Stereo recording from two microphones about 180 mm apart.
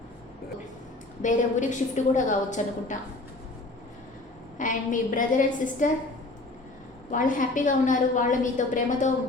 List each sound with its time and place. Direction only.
1.2 s a woman's voice: 45° left (ahead or behind)
4.5 s a woman's voice: 45° left (ahead or behind)
7.1 s a woman's voice: 45° left (ahead or behind)